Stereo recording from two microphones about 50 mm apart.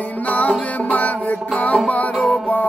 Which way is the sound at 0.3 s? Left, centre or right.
Left.